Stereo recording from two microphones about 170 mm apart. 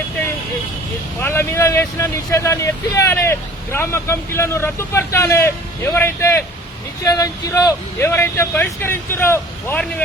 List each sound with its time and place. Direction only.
1.2 s speech: 15° left (ahead or behind)